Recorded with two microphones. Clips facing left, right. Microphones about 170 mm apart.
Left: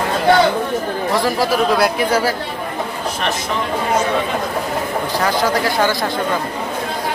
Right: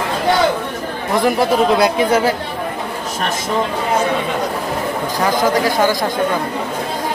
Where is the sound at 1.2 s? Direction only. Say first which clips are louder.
Right 5 dB; 20° right (ahead or behind).